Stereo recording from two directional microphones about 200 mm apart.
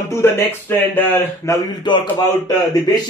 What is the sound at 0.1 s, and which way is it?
A man's voice, 10° left (ahead or behind).